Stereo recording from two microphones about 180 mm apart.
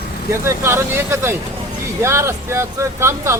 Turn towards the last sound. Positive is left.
turn(degrees=-15)  # may be behind; listen again after turning